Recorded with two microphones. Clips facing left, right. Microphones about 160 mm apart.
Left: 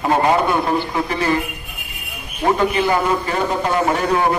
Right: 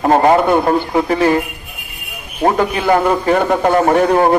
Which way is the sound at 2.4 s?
45° right (ahead or behind).